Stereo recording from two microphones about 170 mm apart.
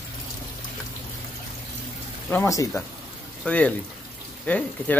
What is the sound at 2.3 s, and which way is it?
Speech, 20° left (ahead or behind).